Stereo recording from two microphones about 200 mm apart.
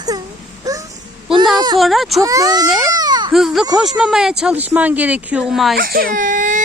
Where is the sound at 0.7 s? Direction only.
15° right (ahead or behind).